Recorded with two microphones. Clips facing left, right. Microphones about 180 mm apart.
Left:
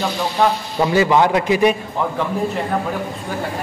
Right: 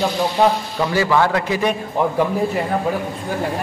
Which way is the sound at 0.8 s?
20° left (ahead or behind).